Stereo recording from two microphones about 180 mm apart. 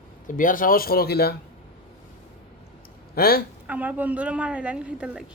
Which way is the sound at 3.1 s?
55° left (ahead or behind).